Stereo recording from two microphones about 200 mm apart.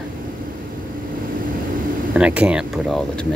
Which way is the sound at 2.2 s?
5° right (ahead or behind).